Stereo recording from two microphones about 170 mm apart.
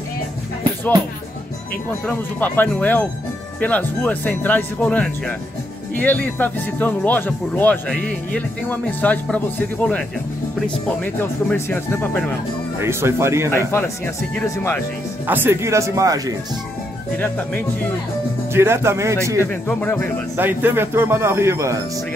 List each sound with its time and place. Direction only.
2.0 s speech: 10° left (ahead or behind)
11.1 s speech: 10° left (ahead or behind)
12.7 s speech: 15° right (ahead or behind)
13.5 s speech: 15° left (ahead or behind)
15.2 s speech: 10° right (ahead or behind)
18.5 s speech: 15° right (ahead or behind)
19.7 s speech: 10° left (ahead or behind)
20.3 s speech: 10° right (ahead or behind)